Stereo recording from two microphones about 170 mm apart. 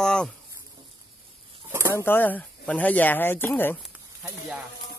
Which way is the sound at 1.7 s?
15° right (ahead or behind).